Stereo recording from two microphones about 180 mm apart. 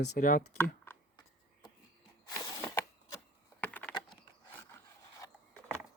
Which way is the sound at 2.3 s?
15° left (ahead or behind).